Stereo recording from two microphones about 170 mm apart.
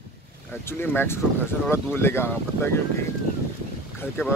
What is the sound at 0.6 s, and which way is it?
Speech, 10° left (ahead or behind).